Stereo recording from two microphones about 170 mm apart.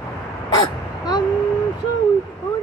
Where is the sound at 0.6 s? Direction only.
25° left (ahead or behind).